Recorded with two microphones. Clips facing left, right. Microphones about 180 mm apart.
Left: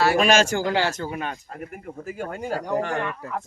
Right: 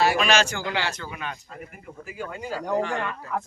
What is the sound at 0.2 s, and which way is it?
A man's voice, 45° left (ahead or behind).